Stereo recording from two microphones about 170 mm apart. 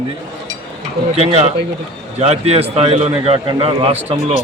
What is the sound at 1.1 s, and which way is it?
A man's voice, 40° right (ahead or behind).